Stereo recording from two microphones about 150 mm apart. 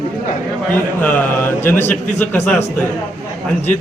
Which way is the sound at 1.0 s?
10° left (ahead or behind).